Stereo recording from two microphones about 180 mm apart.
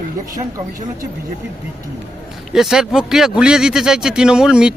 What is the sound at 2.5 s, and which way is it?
Speech, 5° right (ahead or behind).